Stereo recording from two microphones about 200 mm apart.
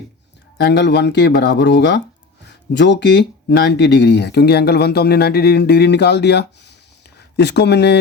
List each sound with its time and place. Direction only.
0.6 s speech: 60° left (ahead or behind)